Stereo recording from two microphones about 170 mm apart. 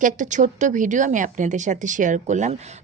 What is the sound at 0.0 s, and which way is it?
A woman's voice, 50° right (ahead or behind).